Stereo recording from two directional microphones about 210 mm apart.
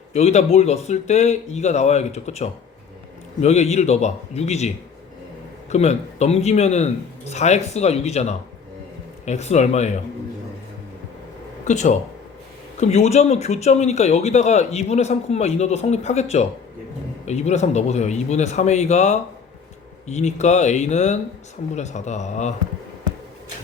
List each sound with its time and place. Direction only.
0.1 s speech: 30° left (ahead or behind)
5.7 s speech: 30° left (ahead or behind)
11.6 s speech: 35° left (ahead or behind)